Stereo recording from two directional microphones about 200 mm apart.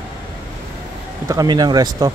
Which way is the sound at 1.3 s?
20° right (ahead or behind).